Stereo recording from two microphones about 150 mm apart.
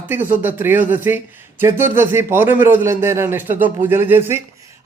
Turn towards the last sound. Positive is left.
turn(degrees=-15)  # may be behind; listen again after turning